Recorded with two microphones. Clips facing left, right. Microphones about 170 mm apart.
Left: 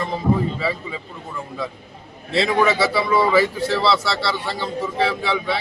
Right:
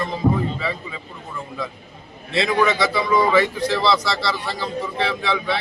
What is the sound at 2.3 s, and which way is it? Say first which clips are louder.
Speech: left 1 dB; 30° left (ahead or behind).